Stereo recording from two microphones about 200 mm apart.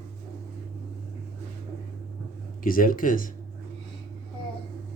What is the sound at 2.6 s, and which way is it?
Speech, 45° left (ahead or behind).